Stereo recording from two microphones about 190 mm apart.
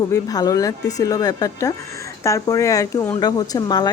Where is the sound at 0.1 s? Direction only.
20° left (ahead or behind).